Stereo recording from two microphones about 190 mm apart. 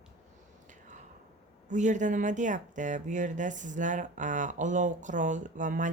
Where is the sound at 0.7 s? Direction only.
40° right (ahead or behind).